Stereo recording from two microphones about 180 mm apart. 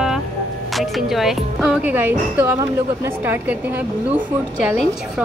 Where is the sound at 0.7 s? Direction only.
Centre (ahead or behind).